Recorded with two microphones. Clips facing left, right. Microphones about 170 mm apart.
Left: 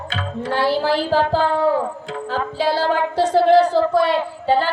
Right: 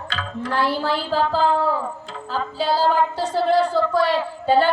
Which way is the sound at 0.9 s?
90° left.